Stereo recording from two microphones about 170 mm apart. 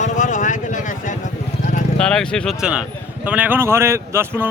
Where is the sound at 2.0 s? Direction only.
5° left (ahead or behind).